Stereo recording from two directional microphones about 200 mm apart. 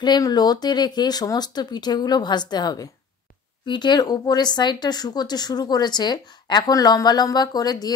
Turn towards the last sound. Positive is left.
turn(degrees=20)  # may be behind; listen again after turning